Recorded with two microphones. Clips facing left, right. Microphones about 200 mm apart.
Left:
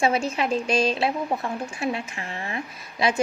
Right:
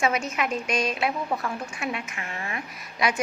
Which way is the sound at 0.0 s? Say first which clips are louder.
Left 3 dB; 30° left (ahead or behind).